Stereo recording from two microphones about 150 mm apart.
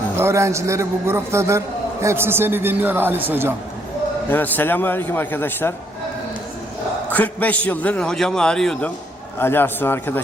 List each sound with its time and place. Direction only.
0.2 s a man's voice: 20° right (ahead or behind)
4.3 s a man's voice: 10° left (ahead or behind)
7.1 s a man's voice: 10° left (ahead or behind)
9.4 s a man's voice: 15° left (ahead or behind)